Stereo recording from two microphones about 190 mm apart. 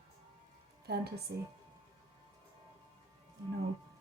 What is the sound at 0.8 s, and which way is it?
Speech, 55° right (ahead or behind).